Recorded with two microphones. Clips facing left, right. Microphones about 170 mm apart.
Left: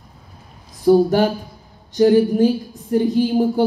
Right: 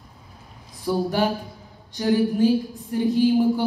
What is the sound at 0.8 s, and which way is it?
A man's voice, 45° left (ahead or behind).